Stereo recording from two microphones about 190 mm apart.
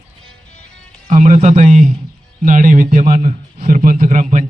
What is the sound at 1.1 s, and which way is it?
A man's voice, 40° right (ahead or behind).